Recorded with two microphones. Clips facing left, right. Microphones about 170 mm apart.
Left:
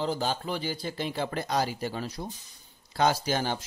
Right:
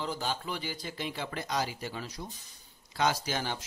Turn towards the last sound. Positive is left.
turn(degrees=35)  # may be behind; listen again after turning